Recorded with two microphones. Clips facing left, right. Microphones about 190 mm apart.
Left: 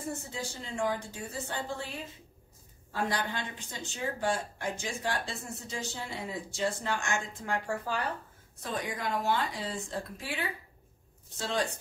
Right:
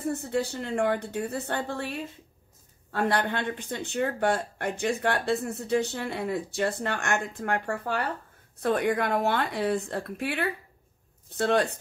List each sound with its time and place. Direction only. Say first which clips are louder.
0.0 s speech: right 9 dB; 60° right (ahead or behind)